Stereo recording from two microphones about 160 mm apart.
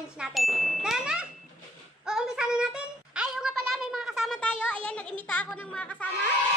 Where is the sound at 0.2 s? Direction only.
Centre (ahead or behind).